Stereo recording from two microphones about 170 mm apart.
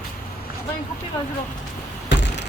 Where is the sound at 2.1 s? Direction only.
90° left.